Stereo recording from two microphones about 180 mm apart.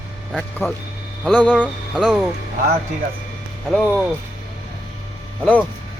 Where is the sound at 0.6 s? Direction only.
15° left (ahead or behind).